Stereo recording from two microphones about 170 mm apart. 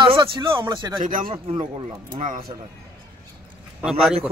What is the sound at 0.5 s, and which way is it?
Speech, 15° right (ahead or behind).